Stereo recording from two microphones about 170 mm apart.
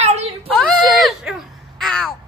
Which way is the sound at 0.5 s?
5° left (ahead or behind).